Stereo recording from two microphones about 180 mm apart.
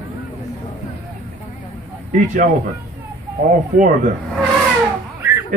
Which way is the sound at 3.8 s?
45° right (ahead or behind).